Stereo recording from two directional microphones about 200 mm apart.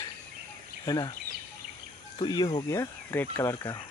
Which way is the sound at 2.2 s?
20° left (ahead or behind).